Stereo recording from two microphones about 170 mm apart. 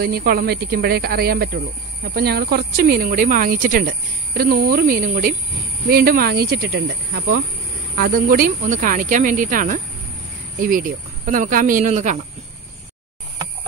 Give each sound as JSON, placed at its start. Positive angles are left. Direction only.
{"t": 0.0, "sound": "speech", "side_deg": -60}
{"t": 8.0, "sound": "speech", "side_deg": -55}